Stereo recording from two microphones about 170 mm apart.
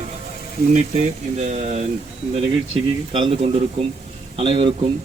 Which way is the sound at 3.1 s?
35° right (ahead or behind).